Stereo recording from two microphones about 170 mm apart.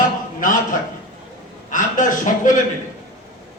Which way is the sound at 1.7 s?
50° left (ahead or behind).